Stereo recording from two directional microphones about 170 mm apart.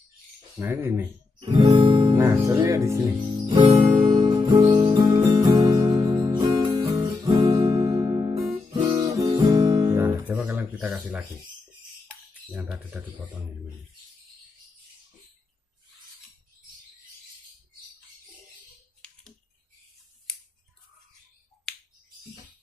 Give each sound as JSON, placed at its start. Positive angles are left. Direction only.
{"t": 0.6, "sound": "speech", "side_deg": -15}
{"t": 1.4, "sound": "guitar", "side_deg": -30}
{"t": 2.1, "sound": "speech", "side_deg": -15}
{"t": 4.0, "sound": "music", "side_deg": -25}
{"t": 8.6, "sound": "guitar", "side_deg": -25}
{"t": 12.4, "sound": "speech", "side_deg": -5}
{"t": 20.3, "sound": "scissors", "side_deg": 5}